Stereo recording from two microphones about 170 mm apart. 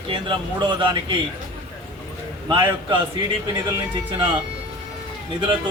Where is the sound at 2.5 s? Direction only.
30° right (ahead or behind).